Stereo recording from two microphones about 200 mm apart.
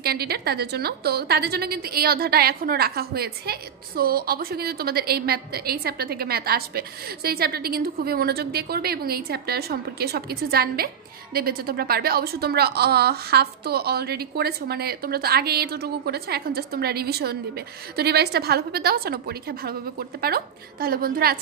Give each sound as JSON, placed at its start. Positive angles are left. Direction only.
{"t": 0.0, "sound": "a woman's voice", "side_deg": -50}